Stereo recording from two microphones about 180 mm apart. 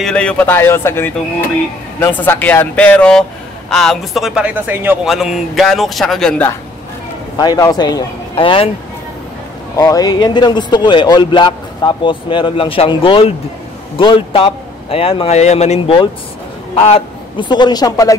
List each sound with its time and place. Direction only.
0.0 s speech: 5° left (ahead or behind)
2.2 s speech: 10° left (ahead or behind)
7.3 s speech: 20° left (ahead or behind)
9.8 s a man's voice: 20° left (ahead or behind)